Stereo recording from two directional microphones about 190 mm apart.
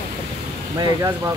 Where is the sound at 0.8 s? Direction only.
20° right (ahead or behind).